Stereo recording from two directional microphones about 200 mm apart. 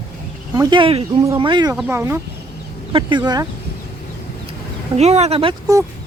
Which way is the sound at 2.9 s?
25° right (ahead or behind).